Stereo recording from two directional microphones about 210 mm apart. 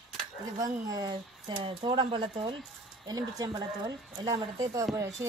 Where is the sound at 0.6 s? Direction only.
15° right (ahead or behind).